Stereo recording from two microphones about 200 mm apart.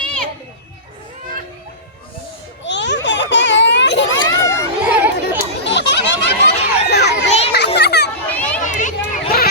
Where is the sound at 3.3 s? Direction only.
60° left (ahead or behind).